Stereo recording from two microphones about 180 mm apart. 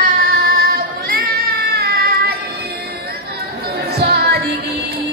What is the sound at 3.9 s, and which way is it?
Music, 60° right (ahead or behind).